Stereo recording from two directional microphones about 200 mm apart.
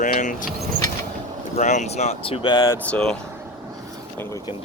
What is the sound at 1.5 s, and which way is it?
Speech, 35° left (ahead or behind).